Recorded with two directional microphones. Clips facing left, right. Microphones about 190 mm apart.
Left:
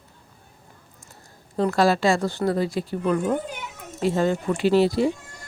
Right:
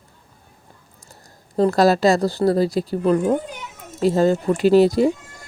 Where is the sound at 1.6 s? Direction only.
40° right (ahead or behind).